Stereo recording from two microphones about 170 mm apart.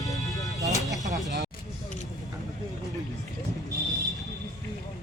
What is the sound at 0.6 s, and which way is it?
Speech, 20° right (ahead or behind).